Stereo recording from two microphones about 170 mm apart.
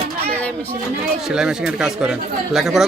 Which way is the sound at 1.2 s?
5° right (ahead or behind).